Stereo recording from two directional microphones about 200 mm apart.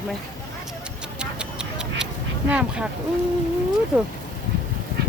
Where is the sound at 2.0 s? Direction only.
5° right (ahead or behind).